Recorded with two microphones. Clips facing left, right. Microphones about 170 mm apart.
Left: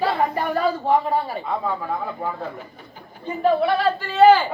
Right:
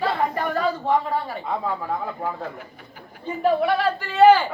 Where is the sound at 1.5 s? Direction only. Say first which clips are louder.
Left 1 dB; 5° right (ahead or behind).